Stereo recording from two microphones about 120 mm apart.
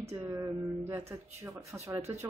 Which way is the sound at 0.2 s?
20° right (ahead or behind).